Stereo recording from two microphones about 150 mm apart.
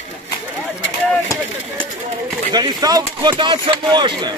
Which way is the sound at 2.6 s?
25° right (ahead or behind).